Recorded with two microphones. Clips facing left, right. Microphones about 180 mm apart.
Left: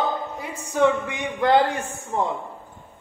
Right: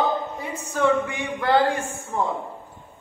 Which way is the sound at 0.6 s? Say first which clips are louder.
Left 1 dB; 15° left (ahead or behind).